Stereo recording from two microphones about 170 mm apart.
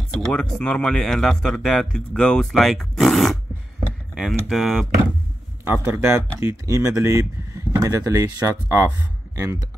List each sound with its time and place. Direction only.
0.3 s speech: 5° left (ahead or behind)
5.7 s speech: 10° right (ahead or behind)